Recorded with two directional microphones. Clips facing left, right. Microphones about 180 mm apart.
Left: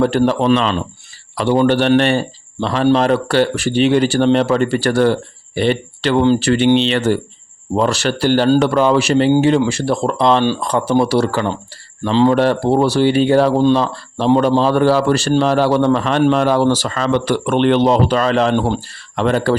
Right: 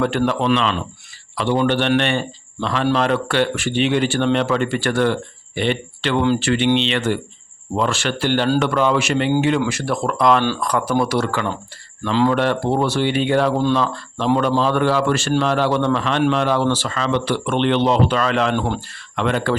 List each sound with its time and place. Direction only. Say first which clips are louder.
0.0 s a man's voice: left 5 dB; 35° left (ahead or behind)